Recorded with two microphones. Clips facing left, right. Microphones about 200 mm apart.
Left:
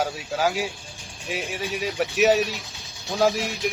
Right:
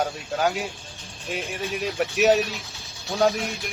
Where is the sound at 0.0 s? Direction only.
5° left (ahead or behind).